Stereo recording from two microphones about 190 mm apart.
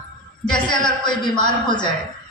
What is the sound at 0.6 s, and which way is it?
A man's voice, 25° left (ahead or behind).